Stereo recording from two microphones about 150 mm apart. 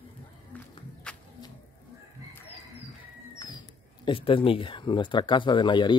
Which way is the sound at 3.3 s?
30° left (ahead or behind).